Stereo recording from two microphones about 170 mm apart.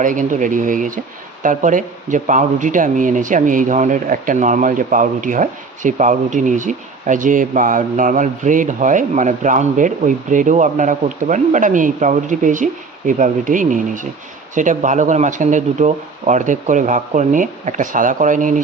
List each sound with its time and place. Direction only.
0.0 s speech: 50° right (ahead or behind)